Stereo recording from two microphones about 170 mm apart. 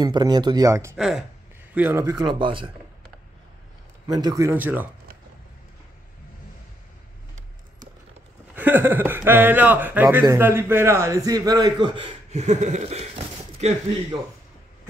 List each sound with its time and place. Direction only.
0.0 s a man's voice: 25° right (ahead or behind)
0.9 s speech: centre (ahead or behind)
1.7 s speech: 10° right (ahead or behind); by 3.1 s 30° right (ahead or behind)
4.1 s speech: 20° right (ahead or behind)
8.5 s a man's voice: 10° right (ahead or behind); by 13.7 s 40° right (ahead or behind)